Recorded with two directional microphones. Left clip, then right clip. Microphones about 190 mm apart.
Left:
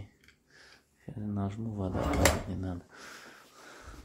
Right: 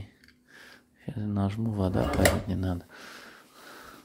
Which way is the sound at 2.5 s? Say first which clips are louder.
Right 6 dB; 30° right (ahead or behind).